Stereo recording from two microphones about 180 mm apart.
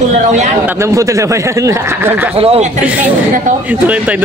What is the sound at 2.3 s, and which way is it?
Speech, 35° right (ahead or behind).